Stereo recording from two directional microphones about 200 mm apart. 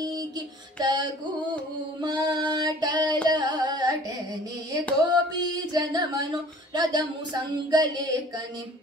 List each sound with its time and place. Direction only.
0.7 s singing: 20° right (ahead or behind)
2.0 s a sound: 20° right (ahead or behind)
3.3 s carnatic music: 20° right (ahead or behind)
5.0 s singing: 20° right (ahead or behind)
6.7 s speech: 20° right (ahead or behind)
7.5 s singing: 20° right (ahead or behind)